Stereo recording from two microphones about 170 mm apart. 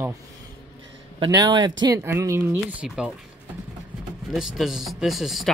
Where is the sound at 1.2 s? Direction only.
25° right (ahead or behind); by 3.1 s 5° right (ahead or behind).